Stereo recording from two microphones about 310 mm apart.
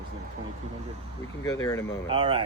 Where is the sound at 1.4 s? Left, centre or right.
Centre.